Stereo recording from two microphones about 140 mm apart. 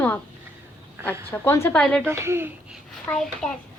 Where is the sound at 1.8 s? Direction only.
5° left (ahead or behind).